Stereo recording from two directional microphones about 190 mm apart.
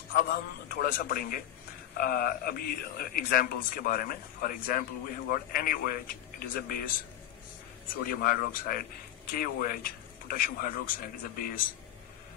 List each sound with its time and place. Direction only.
0.1 s speech: 50° left (ahead or behind)
8.1 s speech: 50° left (ahead or behind)